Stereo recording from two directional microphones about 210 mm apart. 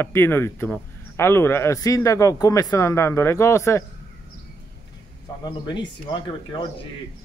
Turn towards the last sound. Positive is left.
turn(degrees=20)  # may be behind; listen again after turning